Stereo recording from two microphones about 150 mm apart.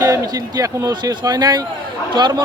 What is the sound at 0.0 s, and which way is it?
Speech, 20° right (ahead or behind).